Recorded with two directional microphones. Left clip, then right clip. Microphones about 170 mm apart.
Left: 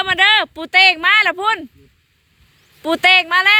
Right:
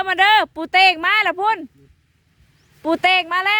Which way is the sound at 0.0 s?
25° right (ahead or behind).